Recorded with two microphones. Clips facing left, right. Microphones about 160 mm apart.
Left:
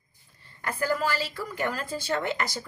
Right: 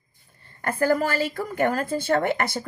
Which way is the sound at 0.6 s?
50° right (ahead or behind).